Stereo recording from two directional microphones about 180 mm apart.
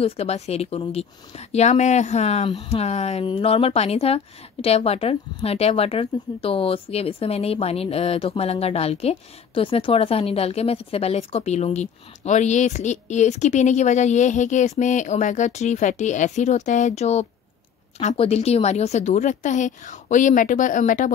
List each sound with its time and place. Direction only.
0.0 s a woman's voice: 35° left (ahead or behind)